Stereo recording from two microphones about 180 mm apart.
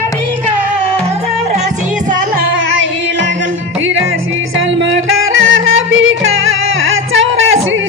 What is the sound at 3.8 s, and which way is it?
Music, 90° right.